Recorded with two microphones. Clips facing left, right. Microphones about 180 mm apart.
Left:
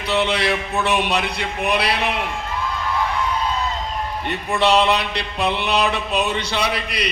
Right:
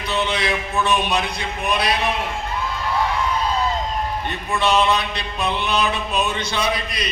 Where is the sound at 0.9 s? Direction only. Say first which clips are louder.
Left 1 dB; 65° left (ahead or behind).